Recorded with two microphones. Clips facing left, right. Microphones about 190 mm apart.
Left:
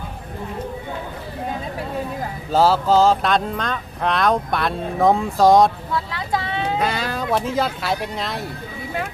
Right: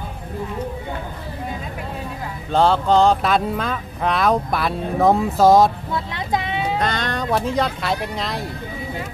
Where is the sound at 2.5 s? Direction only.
5° left (ahead or behind).